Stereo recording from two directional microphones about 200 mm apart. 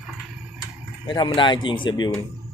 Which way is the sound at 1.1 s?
25° left (ahead or behind).